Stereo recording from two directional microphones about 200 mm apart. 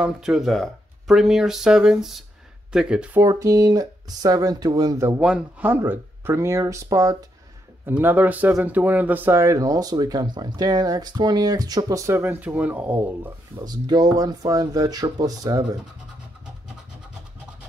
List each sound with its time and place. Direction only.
0.0 s speech: 5° right (ahead or behind)
13.7 s speech: 20° right (ahead or behind)